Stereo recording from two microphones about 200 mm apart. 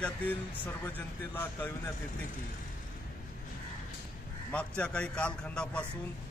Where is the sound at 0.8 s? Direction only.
10° left (ahead or behind).